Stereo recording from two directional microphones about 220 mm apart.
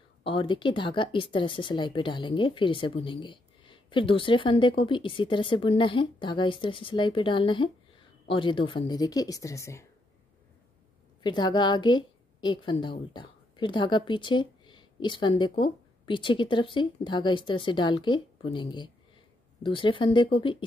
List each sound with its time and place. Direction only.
0.2 s speech: 25° left (ahead or behind)
11.2 s a woman's voice: 20° left (ahead or behind)